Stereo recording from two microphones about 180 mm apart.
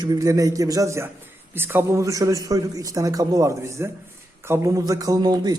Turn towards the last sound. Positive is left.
turn(degrees=-20)  # may be behind; listen again after turning